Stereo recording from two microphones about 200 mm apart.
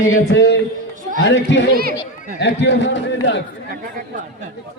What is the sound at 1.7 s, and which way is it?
Chatter, 50° right (ahead or behind).